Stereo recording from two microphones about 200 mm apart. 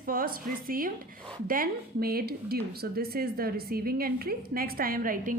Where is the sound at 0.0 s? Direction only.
45° right (ahead or behind).